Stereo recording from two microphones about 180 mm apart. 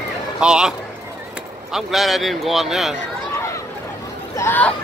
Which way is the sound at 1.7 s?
Centre (ahead or behind).